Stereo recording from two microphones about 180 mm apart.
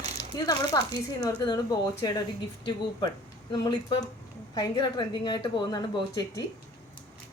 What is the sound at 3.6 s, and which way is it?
Speech, 25° left (ahead or behind).